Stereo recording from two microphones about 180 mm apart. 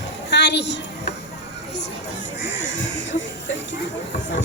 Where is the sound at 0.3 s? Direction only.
70° left (ahead or behind).